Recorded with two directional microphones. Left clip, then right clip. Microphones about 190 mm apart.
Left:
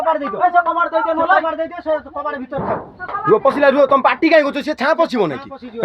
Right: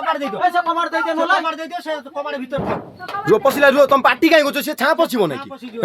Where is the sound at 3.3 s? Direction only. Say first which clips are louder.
Left 1 dB; 5° right (ahead or behind).